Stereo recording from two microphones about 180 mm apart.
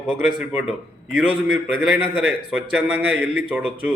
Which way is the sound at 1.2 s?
10° right (ahead or behind).